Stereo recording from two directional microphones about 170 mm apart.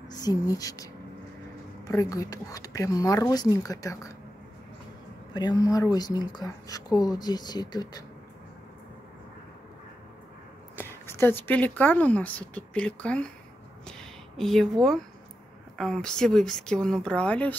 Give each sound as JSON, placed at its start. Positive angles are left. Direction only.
{"t": 0.1, "sound": "speech", "side_deg": 20}
{"t": 1.9, "sound": "speech", "side_deg": 20}
{"t": 5.3, "sound": "speech", "side_deg": 25}
{"t": 10.8, "sound": "speech", "side_deg": 15}
{"t": 13.8, "sound": "a sound", "side_deg": 0}
{"t": 15.8, "sound": "speech", "side_deg": 5}